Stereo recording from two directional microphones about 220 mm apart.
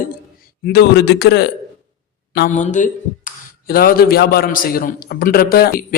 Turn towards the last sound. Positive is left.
turn(degrees=40)  # may be behind; listen again after turning